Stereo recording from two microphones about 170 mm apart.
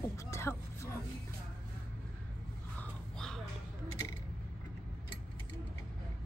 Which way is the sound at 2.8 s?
5° left (ahead or behind).